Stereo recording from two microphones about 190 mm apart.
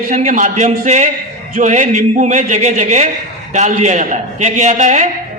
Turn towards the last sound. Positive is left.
turn(degrees=-40)  # may be behind; listen again after turning